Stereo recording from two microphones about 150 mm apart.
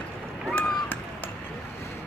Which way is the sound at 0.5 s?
10° left (ahead or behind).